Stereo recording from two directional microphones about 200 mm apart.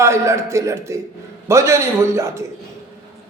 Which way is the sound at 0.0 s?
15° right (ahead or behind).